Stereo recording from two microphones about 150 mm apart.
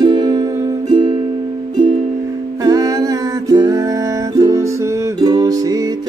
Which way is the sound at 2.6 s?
25° right (ahead or behind).